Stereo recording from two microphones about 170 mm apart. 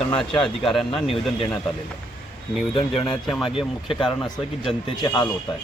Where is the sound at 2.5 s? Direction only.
Centre (ahead or behind).